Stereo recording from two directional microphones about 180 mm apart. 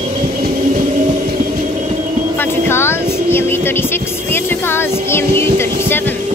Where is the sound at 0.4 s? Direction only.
50° right (ahead or behind).